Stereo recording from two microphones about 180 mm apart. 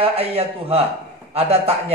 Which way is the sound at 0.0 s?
35° right (ahead or behind).